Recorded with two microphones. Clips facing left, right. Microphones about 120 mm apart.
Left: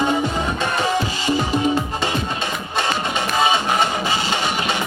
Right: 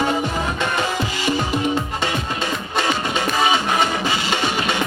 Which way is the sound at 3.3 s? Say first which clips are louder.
Left 1 dB; 25° left (ahead or behind).